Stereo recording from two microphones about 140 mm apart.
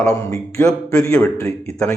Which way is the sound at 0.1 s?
25° left (ahead or behind).